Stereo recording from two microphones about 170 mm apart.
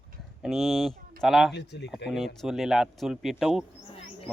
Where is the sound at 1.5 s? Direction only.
80° left.